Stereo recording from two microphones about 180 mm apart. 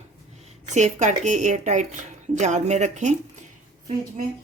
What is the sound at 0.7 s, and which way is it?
Speech, 40° right (ahead or behind).